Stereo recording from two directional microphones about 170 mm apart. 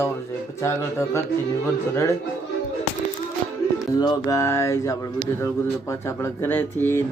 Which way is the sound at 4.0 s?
20° left (ahead or behind).